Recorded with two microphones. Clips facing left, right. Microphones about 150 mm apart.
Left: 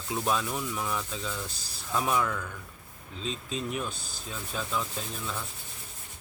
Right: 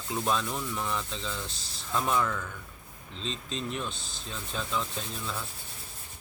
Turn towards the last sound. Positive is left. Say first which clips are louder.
# even
turn(degrees=0)  # may be behind; listen again after turning